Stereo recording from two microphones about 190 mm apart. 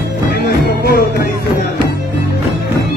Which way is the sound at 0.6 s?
55° left (ahead or behind).